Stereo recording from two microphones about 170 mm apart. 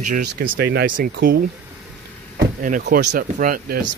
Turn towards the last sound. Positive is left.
turn(degrees=-55)  # may be behind; listen again after turning